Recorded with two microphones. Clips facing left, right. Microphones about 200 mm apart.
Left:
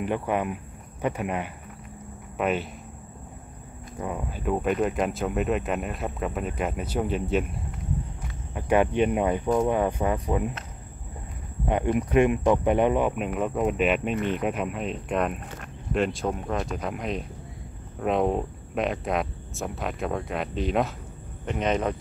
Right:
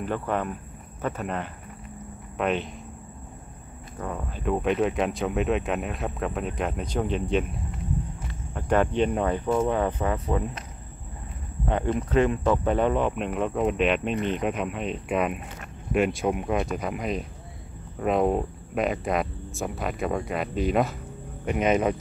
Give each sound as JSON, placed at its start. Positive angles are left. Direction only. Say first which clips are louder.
{"t": 0.0, "sound": "speech", "louder": "left 1 dB", "side_deg": 15}
{"t": 4.0, "sound": "speech", "louder": "even", "side_deg": 10}
{"t": 8.5, "sound": "speech", "louder": "left 1 dB", "side_deg": 10}
{"t": 11.6, "sound": "speech", "louder": "left 2 dB", "side_deg": 15}